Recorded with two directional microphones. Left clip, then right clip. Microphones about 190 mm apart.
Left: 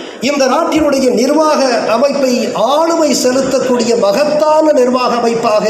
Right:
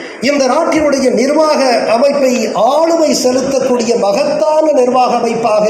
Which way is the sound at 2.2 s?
50° left (ahead or behind).